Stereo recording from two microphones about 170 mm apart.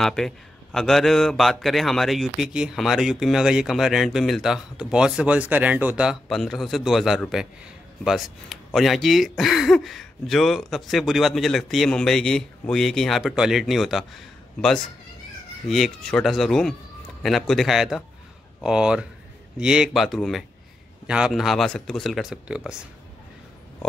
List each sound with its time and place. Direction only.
0.0 s speech: 5° left (ahead or behind)